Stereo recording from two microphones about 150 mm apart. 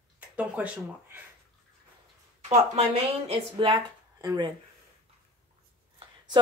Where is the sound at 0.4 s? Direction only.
10° right (ahead or behind).